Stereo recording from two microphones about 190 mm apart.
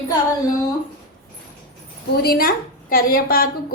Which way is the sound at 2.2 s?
50° left (ahead or behind).